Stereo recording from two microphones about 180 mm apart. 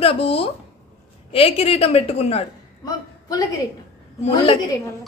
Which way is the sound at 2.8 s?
20° left (ahead or behind).